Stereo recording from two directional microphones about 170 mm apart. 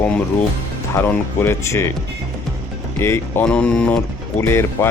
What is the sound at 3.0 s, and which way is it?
Speech, 10° left (ahead or behind).